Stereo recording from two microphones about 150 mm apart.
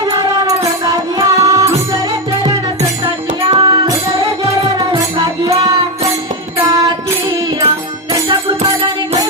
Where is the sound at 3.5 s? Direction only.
30° right (ahead or behind).